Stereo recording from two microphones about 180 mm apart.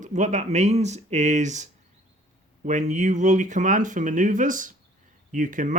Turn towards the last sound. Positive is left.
turn(degrees=-45)  # may be behind; listen again after turning